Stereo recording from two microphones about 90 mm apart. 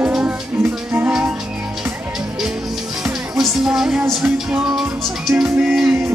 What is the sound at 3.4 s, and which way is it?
Music, 5° right (ahead or behind).